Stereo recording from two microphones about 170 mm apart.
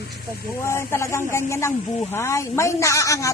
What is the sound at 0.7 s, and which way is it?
A woman's voice, 15° left (ahead or behind).